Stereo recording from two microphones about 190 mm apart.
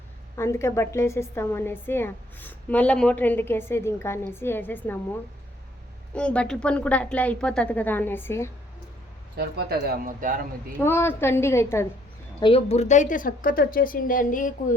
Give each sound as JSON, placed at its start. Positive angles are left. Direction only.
{"t": 0.3, "sound": "a woman's voice", "side_deg": 15}
{"t": 6.1, "sound": "a woman's voice", "side_deg": 5}
{"t": 9.4, "sound": "speech", "side_deg": -55}
{"t": 10.7, "sound": "a woman's voice", "side_deg": 10}
{"t": 12.4, "sound": "speech", "side_deg": 30}